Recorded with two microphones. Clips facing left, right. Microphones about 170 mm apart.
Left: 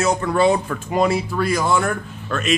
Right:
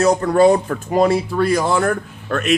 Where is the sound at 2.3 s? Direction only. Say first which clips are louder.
Right 3 dB; 60° right (ahead or behind).